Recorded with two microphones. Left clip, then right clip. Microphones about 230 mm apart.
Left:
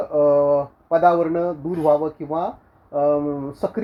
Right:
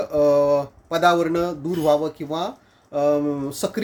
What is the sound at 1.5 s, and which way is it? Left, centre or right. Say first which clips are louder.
Speech: left 1 dB; right.